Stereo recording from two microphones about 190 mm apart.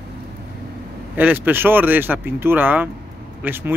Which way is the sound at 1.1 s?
10° right (ahead or behind).